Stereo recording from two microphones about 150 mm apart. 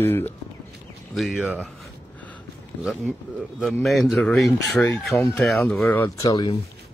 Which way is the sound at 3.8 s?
Centre (ahead or behind).